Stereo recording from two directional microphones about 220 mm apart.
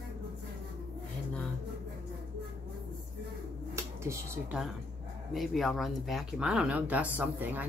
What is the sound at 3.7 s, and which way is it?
Speech, 10° right (ahead or behind).